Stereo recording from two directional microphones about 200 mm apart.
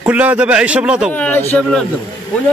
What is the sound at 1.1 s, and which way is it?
Speech, 10° left (ahead or behind).